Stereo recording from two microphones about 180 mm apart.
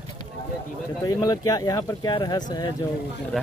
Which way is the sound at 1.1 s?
20° left (ahead or behind).